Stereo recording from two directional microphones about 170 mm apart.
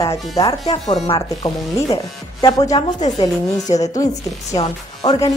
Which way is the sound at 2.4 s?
20° left (ahead or behind).